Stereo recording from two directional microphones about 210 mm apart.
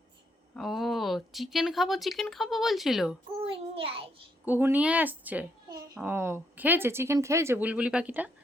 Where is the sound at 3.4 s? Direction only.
25° right (ahead or behind).